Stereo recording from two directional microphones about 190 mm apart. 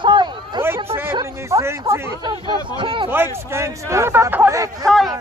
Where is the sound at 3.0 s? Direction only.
15° right (ahead or behind).